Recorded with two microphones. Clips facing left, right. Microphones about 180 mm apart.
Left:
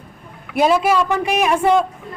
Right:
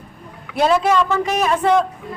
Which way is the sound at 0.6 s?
10° left (ahead or behind).